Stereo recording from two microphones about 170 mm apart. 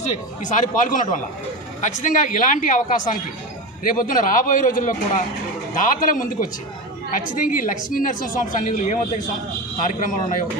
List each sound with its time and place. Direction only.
0.4 s a woman's voice: 45° left (ahead or behind)